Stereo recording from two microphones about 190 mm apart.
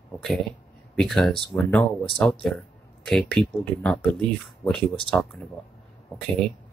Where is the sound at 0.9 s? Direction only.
Centre (ahead or behind).